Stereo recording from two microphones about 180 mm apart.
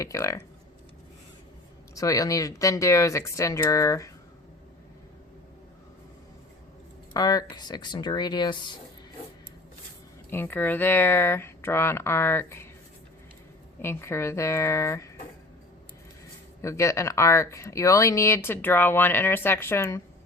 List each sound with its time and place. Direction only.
0.0 s speech: 15° left (ahead or behind)
2.0 s speech: 20° left (ahead or behind)
7.1 s speech: 20° left (ahead or behind)
10.2 s speech: 10° left (ahead or behind)
13.8 s speech: 15° left (ahead or behind)
16.6 s speech: 15° left (ahead or behind)